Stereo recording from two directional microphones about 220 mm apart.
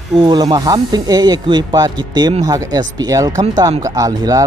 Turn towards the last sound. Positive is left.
turn(degrees=-15)  # may be behind; listen again after turning